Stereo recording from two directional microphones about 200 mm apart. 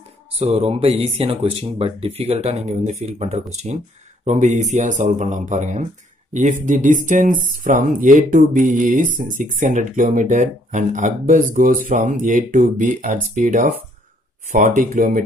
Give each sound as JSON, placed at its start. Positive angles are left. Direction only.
{"t": 0.4, "sound": "speech", "side_deg": -30}